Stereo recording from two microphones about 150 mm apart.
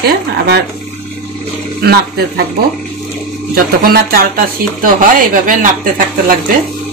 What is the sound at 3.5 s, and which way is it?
Speech, 85° right.